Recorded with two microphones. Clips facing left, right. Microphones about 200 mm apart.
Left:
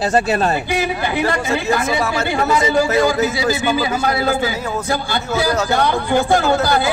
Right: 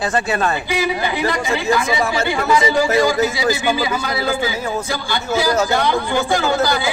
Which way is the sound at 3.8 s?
50° left (ahead or behind).